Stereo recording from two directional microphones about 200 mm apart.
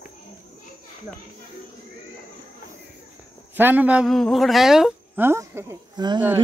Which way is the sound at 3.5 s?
10° right (ahead or behind).